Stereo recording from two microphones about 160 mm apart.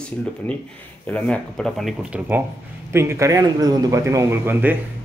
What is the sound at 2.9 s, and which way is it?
Speech, 15° right (ahead or behind).